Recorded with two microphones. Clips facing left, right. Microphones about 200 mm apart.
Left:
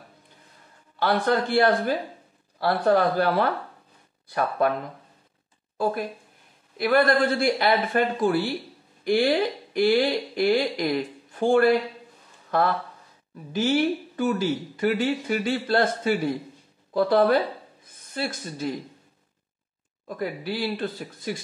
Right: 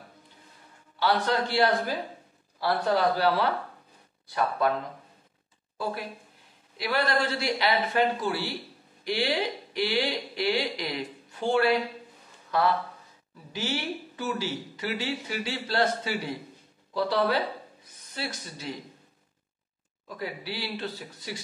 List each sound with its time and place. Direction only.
0.9 s speech: 50° left (ahead or behind)
5.8 s speech: 50° left (ahead or behind)
12.4 s a sound: 50° left (ahead or behind)
13.5 s speech: 50° left (ahead or behind)
20.1 s speech: 50° left (ahead or behind)